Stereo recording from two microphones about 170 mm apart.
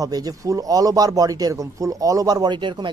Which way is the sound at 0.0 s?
20° right (ahead or behind).